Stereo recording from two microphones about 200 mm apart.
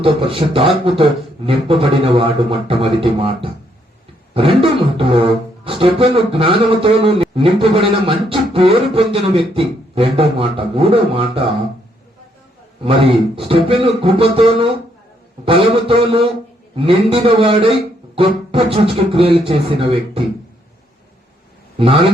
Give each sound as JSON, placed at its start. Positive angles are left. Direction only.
{"t": 0.0, "sound": "beatboxing", "side_deg": -25}
{"t": 12.8, "sound": "beatboxing", "side_deg": -25}
{"t": 21.8, "sound": "beatboxing", "side_deg": -25}